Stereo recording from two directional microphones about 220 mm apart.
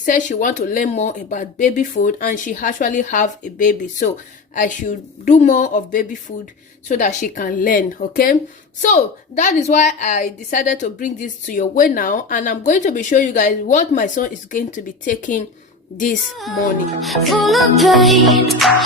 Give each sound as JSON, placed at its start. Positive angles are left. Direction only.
{"t": 0.0, "sound": "a woman's voice", "side_deg": 35}
{"t": 17.0, "sound": "music", "side_deg": 0}